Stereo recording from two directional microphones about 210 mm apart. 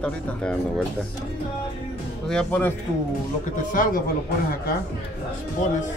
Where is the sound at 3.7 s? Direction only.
40° left (ahead or behind).